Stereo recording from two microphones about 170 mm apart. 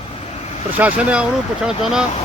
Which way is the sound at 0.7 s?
10° right (ahead or behind).